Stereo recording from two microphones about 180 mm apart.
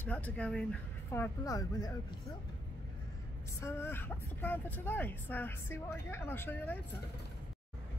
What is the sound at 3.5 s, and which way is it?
Speech, 15° left (ahead or behind).